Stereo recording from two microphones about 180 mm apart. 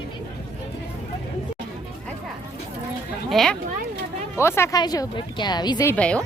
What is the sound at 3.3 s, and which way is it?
Speech, centre (ahead or behind).